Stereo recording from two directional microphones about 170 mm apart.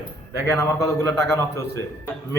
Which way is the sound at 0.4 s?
15° left (ahead or behind).